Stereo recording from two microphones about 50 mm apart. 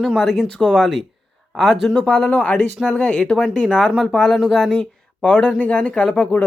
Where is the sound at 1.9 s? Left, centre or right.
Centre.